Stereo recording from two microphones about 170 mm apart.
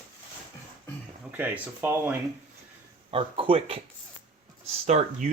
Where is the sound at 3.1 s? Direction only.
35° right (ahead or behind).